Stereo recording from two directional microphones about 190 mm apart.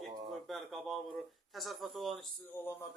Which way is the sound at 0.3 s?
Centre (ahead or behind).